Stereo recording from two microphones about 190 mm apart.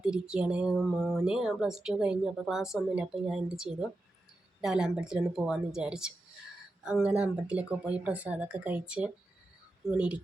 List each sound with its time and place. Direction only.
0.0 s speech: 5° right (ahead or behind)